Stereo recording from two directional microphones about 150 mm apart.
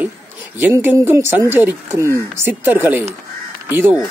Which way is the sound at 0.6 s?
15° right (ahead or behind).